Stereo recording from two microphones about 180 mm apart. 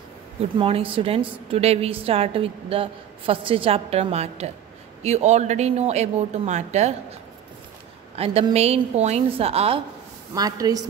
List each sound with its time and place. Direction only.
0.4 s a woman's voice: 30° right (ahead or behind)
8.2 s a woman's voice: 35° right (ahead or behind)
10.3 s a woman's voice: 20° right (ahead or behind)